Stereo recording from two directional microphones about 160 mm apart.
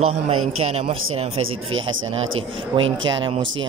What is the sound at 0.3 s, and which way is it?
Speech, 40° right (ahead or behind).